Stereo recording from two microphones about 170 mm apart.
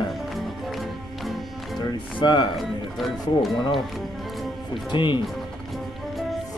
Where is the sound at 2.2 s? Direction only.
25° left (ahead or behind).